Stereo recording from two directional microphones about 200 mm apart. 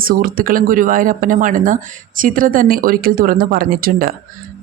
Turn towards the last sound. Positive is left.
turn(degrees=-45)  # may be behind; listen again after turning